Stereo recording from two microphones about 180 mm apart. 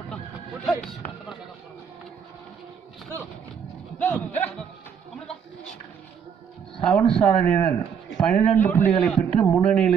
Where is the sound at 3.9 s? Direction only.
10° left (ahead or behind).